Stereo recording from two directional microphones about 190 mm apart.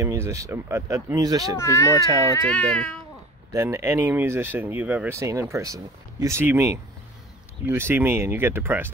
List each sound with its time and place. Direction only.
0.0 s speech: 15° right (ahead or behind)
1.6 s speech: 15° left (ahead or behind)
2.0 s speech: 15° right (ahead or behind)
2.2 s speech: 15° left (ahead or behind)
2.7 s speech: 5° left (ahead or behind)
3.5 s speech: 15° right (ahead or behind)